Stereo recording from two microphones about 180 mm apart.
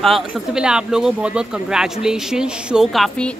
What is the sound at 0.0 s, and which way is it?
A man's voice, centre (ahead or behind).